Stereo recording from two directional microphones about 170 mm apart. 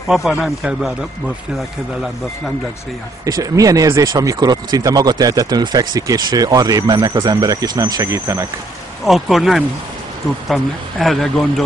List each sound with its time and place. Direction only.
0.1 s speech: centre (ahead or behind)
3.3 s speech: 20° right (ahead or behind)
9.0 s speech: centre (ahead or behind)